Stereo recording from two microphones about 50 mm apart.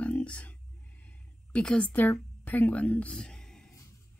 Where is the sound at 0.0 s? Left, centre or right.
Left.